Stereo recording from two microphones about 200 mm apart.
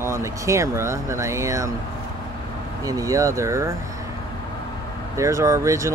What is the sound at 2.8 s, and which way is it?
Speech, 15° right (ahead or behind).